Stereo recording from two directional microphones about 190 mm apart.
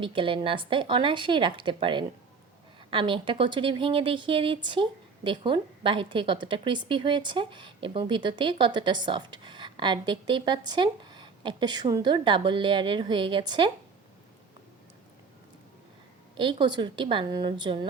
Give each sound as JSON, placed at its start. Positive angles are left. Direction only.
{"t": 0.0, "sound": "speech", "side_deg": -25}
{"t": 16.3, "sound": "speech", "side_deg": -25}